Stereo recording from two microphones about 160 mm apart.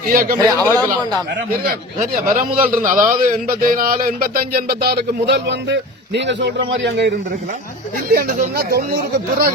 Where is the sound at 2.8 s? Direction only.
55° right (ahead or behind); by 7.1 s 90° right.